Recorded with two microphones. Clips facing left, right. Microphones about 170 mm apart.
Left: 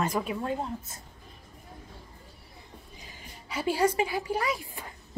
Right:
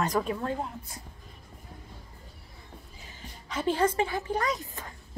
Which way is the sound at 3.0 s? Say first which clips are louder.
Right 1 dB; 10° left (ahead or behind).